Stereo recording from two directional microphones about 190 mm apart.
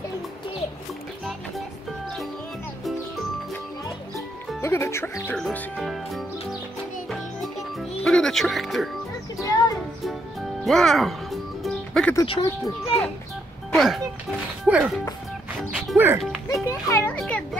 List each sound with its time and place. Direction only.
4.6 s speech: 15° left (ahead or behind)
5.4 s speech: centre (ahead or behind)
8.0 s speech: 5° left (ahead or behind)
10.6 s speech: centre (ahead or behind)
11.6 s music: 5° left (ahead or behind)
12.2 s a child's voice: 15° left (ahead or behind)
13.7 s speech: centre (ahead or behind)
15.7 s music: 5° right (ahead or behind)
16.4 s a child's voice: 15° left (ahead or behind)